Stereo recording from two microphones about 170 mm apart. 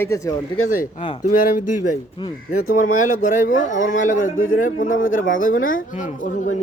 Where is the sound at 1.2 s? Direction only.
50° left (ahead or behind).